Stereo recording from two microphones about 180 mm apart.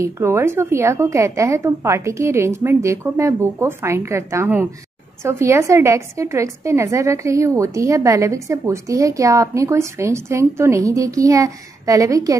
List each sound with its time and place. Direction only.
0.0 s a woman's voice: 15° right (ahead or behind)